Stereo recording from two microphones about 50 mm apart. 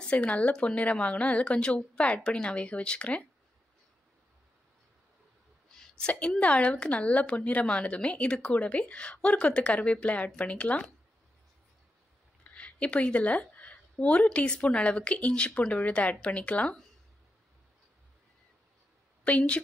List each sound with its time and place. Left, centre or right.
0.2 s a woman's voice: left
5.7 s a sound: centre
6.0 s a woman's voice: left
12.5 s a woman's voice: left
19.2 s a woman's voice: left